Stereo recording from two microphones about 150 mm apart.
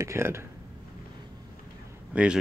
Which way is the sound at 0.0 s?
20° right (ahead or behind).